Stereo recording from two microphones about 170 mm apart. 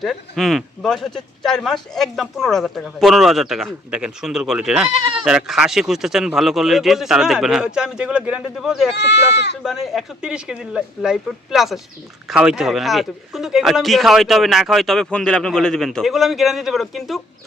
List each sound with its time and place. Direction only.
0.0 s speech: centre (ahead or behind)
9.0 s speech: 90° left
9.6 s speech: centre (ahead or behind)